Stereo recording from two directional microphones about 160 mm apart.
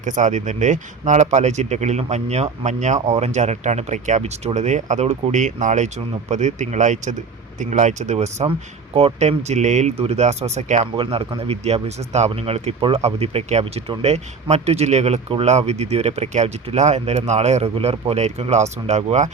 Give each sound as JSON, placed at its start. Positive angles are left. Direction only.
{"t": 0.0, "sound": "speech", "side_deg": -50}